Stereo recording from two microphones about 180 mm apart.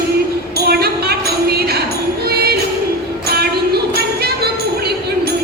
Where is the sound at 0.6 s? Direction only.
60° right (ahead or behind).